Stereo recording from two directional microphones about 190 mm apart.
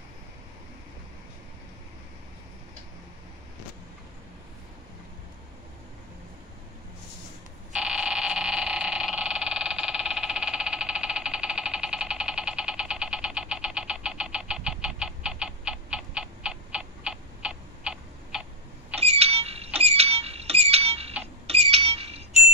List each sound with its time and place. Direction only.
7.7 s vehicle: 5° right (ahead or behind)
18.9 s a sound: 35° right (ahead or behind)
21.5 s cash register: 35° right (ahead or behind)